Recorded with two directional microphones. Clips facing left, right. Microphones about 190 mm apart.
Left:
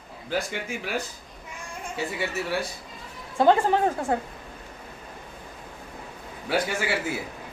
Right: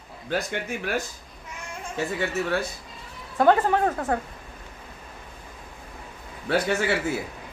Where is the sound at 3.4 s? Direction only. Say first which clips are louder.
Even; 25° left (ahead or behind).